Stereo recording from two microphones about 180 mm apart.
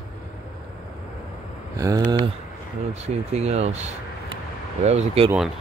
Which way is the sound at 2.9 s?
35° right (ahead or behind).